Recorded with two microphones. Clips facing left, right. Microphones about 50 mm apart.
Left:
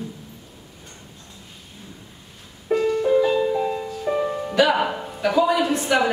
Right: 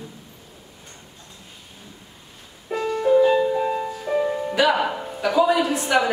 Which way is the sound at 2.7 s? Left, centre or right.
Centre.